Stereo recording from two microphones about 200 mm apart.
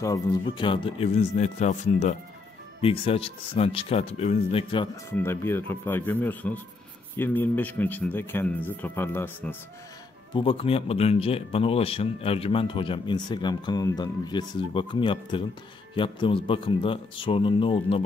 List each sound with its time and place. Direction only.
0.0 s speech: 15° left (ahead or behind)
5.1 s speech: 10° left (ahead or behind)
10.3 s speech: 25° left (ahead or behind)